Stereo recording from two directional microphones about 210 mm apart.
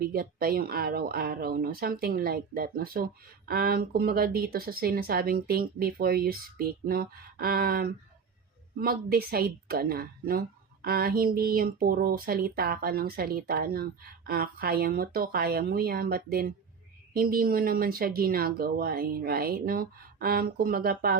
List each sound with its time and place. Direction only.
0.0 s speech: 45° right (ahead or behind)